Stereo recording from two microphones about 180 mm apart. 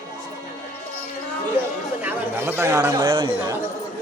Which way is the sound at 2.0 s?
10° right (ahead or behind).